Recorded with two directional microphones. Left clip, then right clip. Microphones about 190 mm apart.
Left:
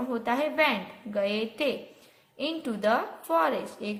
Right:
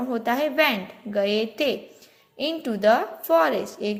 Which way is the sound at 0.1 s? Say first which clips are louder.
Right 4 dB; 25° right (ahead or behind).